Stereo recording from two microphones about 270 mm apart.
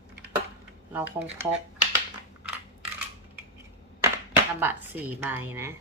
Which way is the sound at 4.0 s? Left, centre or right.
Centre.